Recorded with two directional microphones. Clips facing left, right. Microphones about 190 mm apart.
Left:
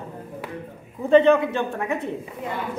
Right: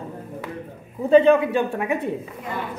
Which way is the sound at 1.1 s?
10° right (ahead or behind).